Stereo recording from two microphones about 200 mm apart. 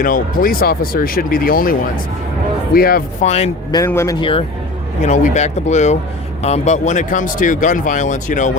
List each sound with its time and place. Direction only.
0.0 s speech: 45° left (ahead or behind)
2.7 s speech: 50° left (ahead or behind)
3.2 s speech: 30° left (ahead or behind)
3.8 s speech: 15° left (ahead or behind)
5.0 s speech: 35° left (ahead or behind)